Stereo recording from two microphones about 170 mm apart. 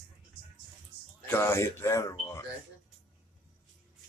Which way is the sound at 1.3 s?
15° left (ahead or behind).